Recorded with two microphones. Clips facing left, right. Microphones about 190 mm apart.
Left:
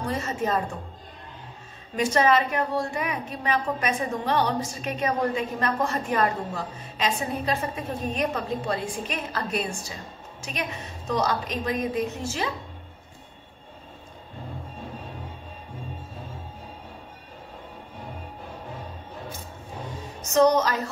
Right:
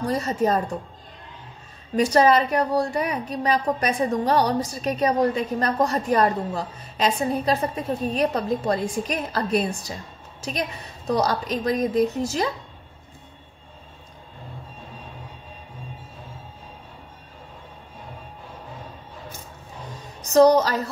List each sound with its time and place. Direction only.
0.0 s a woman's voice: 35° right (ahead or behind)
2.0 s a woman's voice: 35° right (ahead or behind)
20.2 s speech: 35° right (ahead or behind)